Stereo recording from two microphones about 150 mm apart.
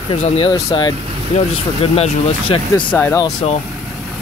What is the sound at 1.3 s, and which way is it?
Speech, 50° left (ahead or behind).